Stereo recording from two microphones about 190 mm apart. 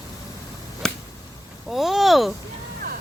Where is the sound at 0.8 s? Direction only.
5° left (ahead or behind).